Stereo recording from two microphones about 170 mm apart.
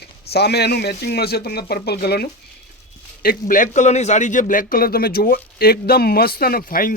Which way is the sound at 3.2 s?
50° left (ahead or behind).